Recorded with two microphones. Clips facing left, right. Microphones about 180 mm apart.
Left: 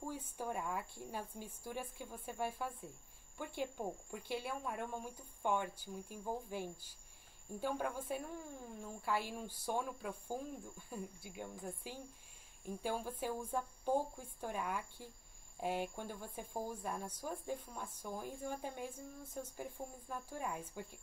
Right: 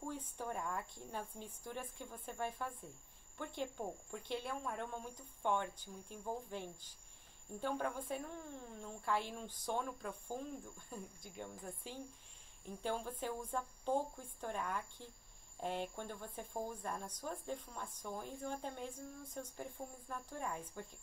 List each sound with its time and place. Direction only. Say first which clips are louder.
0.0 s speech: left 1 dB; 5° left (ahead or behind)